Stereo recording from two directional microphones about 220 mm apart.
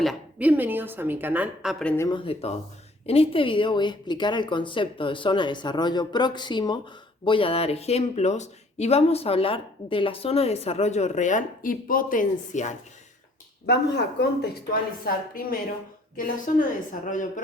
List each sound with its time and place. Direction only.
0.0 s a woman's voice: 5° right (ahead or behind)
1.8 s speech: 5° left (ahead or behind)
2.0 s speech: 25° left (ahead or behind)
13.7 s a woman's voice: 50° left (ahead or behind)